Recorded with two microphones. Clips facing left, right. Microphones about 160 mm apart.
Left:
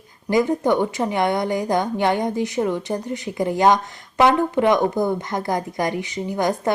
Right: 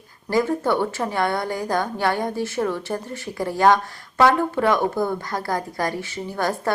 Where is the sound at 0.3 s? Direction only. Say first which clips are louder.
Left 2 dB; 15° left (ahead or behind).